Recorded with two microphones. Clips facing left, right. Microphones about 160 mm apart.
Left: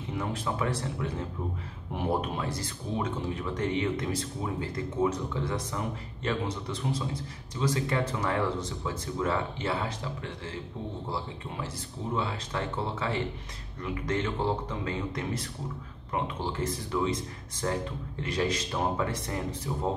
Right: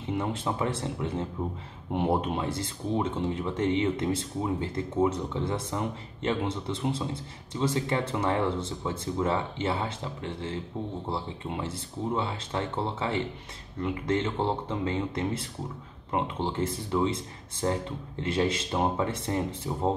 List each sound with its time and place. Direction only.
0.2 s a man's voice: 25° right (ahead or behind)